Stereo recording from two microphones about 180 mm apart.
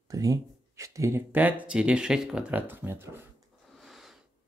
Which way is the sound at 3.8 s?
Centre (ahead or behind).